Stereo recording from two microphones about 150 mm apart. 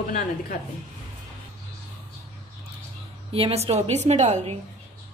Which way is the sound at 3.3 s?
40° right (ahead or behind).